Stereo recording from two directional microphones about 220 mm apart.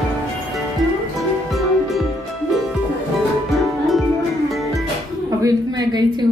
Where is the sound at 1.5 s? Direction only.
Centre (ahead or behind).